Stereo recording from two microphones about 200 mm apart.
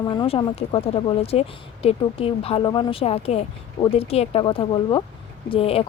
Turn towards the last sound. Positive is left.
turn(degrees=30)  # may be behind; listen again after turning